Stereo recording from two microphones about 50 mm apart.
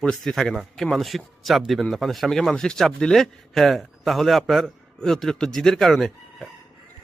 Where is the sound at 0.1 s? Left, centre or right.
Centre.